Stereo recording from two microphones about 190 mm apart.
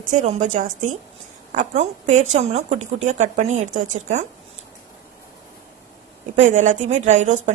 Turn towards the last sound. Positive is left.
turn(degrees=-40)  # may be behind; listen again after turning